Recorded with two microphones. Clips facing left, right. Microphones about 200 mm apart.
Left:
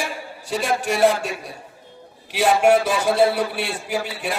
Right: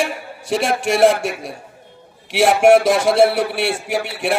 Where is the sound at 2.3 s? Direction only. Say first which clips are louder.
Right 4 dB; 80° right.